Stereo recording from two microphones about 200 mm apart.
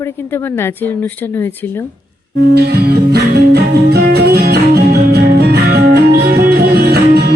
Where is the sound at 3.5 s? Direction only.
50° right (ahead or behind).